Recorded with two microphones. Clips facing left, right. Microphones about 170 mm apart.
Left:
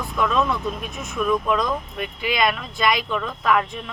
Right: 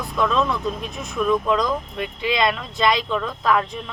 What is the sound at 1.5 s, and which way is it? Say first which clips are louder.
Speech: right 1 dB; 30° right (ahead or behind).